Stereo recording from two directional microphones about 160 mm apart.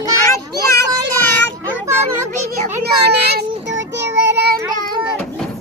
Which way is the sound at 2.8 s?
90° right.